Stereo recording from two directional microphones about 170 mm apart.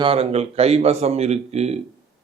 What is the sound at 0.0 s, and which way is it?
Speech, 35° right (ahead or behind).